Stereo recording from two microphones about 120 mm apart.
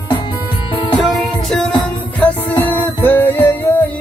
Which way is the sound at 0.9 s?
Centre (ahead or behind).